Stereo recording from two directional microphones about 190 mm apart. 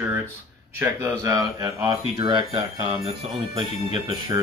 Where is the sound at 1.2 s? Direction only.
15° right (ahead or behind).